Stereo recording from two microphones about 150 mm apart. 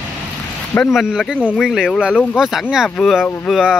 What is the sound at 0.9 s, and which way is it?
Speech, centre (ahead or behind).